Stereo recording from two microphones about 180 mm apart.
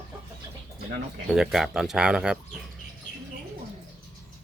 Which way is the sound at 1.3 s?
Centre (ahead or behind).